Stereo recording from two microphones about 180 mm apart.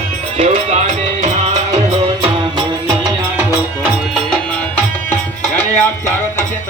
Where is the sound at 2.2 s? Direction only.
25° right (ahead or behind).